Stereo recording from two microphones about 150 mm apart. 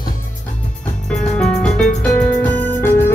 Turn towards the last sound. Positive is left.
turn(degrees=15)  # may be behind; listen again after turning